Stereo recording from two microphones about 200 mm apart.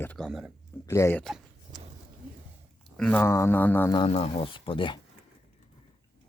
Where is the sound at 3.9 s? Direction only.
30° left (ahead or behind).